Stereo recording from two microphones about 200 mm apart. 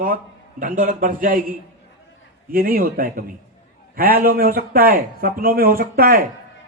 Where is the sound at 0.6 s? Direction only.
40° right (ahead or behind).